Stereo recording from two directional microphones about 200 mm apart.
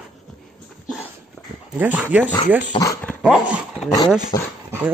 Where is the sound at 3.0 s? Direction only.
5° left (ahead or behind).